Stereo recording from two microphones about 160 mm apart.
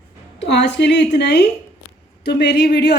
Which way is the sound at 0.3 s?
90° left.